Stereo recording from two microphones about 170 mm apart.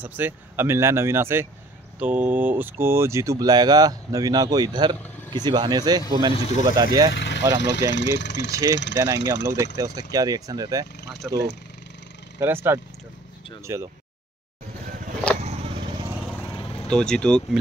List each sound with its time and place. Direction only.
0.0 s speech: 10° right (ahead or behind)
7.2 s speech: 90° left
8.5 s speech: 20° right (ahead or behind)
11.2 s speech: centre (ahead or behind)
12.4 s speech: 15° right (ahead or behind)
15.4 s vehicle: 40° right (ahead or behind)
16.4 s vehicle: 30° left (ahead or behind)
16.8 s speech: 5° left (ahead or behind)